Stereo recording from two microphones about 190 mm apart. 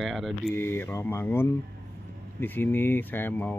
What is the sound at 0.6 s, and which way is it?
Speech, 10° left (ahead or behind).